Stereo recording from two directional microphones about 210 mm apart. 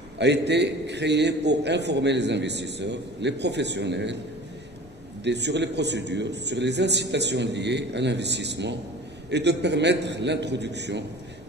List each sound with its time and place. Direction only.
0.2 s a man's voice: 55° right (ahead or behind)
5.2 s a man's voice: 55° right (ahead or behind)